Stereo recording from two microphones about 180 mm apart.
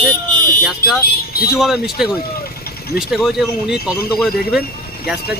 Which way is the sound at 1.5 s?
5° right (ahead or behind).